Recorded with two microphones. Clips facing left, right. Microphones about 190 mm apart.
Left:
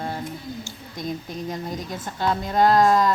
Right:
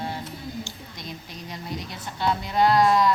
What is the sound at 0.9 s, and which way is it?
A woman's voice, 50° left (ahead or behind).